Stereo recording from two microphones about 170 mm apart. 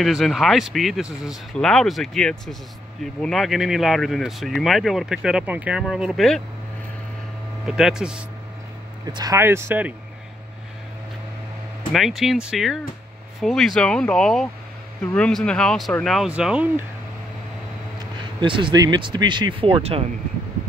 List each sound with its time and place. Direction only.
0.0 s speech: centre (ahead or behind)
7.6 s speech: 5° right (ahead or behind)
9.1 s speech: 20° right (ahead or behind)
11.9 s speech: centre (ahead or behind)
17.9 s speech: 30° right (ahead or behind)